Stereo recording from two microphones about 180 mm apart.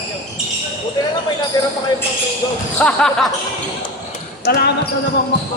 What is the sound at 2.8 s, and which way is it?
Speech, 5° left (ahead or behind).